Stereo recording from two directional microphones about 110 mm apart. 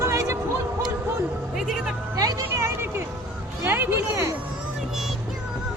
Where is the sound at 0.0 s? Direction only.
30° right (ahead or behind).